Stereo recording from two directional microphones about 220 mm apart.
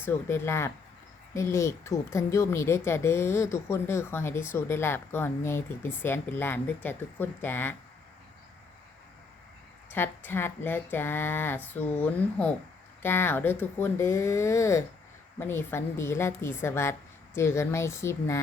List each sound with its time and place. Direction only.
0.0 s speech: 10° left (ahead or behind)
9.9 s speech: 10° left (ahead or behind)